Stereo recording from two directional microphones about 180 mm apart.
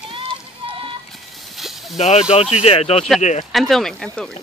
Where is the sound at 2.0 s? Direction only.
35° left (ahead or behind).